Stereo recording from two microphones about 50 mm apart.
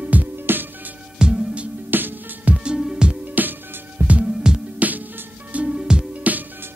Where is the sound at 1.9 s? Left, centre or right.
Right.